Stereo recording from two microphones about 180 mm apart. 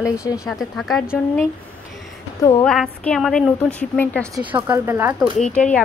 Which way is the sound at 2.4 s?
15° left (ahead or behind).